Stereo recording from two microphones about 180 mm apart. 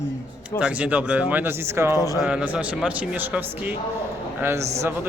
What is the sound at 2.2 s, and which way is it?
Speech, 5° right (ahead or behind).